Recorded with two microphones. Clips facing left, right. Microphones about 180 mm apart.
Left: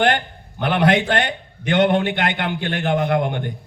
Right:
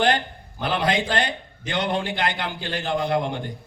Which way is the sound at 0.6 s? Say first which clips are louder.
Left 6 dB; 65° left (ahead or behind).